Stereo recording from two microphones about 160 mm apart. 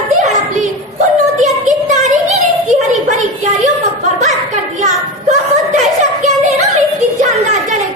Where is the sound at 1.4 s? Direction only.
50° right (ahead or behind).